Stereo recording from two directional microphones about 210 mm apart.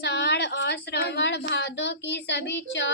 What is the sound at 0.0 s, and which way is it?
A woman's voice, 55° left (ahead or behind).